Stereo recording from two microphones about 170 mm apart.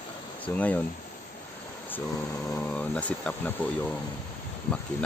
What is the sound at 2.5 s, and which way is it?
Speech, 10° left (ahead or behind).